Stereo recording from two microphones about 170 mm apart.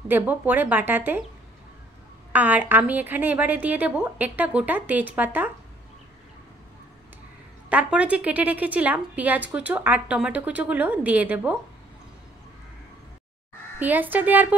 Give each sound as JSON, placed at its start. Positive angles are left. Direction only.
{"t": 0.1, "sound": "a woman's voice", "side_deg": -10}
{"t": 2.3, "sound": "a woman's voice", "side_deg": -10}
{"t": 7.7, "sound": "a woman's voice", "side_deg": -5}
{"t": 13.7, "sound": "a woman's voice", "side_deg": -10}